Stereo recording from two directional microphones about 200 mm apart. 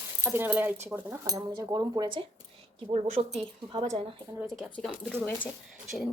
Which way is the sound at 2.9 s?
35° right (ahead or behind).